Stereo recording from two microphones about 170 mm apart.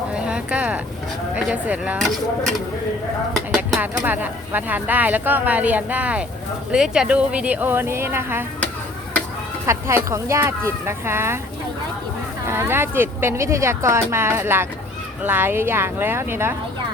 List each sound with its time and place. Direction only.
0.1 s a sound: 5° right (ahead or behind)
1.5 s speech: 10° right (ahead or behind)
3.5 s a sound: centre (ahead or behind)
4.0 s speech: 10° right (ahead or behind)
9.6 s speech: 15° right (ahead or behind)
12.5 s speech: 15° right (ahead or behind)